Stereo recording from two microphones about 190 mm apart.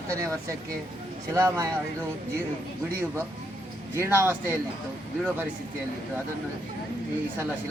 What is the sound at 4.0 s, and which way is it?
Speech, 10° right (ahead or behind).